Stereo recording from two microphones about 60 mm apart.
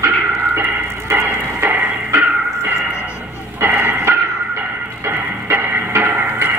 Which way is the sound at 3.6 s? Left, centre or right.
Right.